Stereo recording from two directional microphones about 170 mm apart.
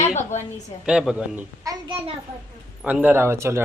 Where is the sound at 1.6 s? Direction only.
20° right (ahead or behind).